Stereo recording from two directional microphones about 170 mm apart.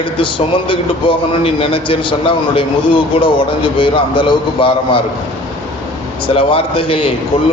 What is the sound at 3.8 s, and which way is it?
Speech, 30° left (ahead or behind).